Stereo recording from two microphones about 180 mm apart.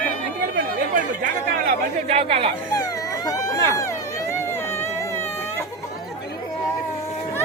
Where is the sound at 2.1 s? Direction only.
35° right (ahead or behind).